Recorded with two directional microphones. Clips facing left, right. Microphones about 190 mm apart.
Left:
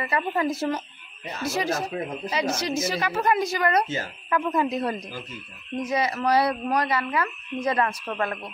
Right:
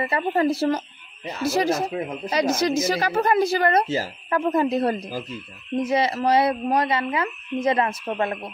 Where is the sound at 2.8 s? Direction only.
40° right (ahead or behind).